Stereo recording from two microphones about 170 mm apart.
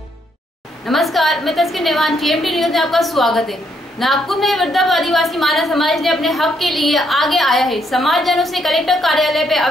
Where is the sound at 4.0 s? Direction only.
Centre (ahead or behind).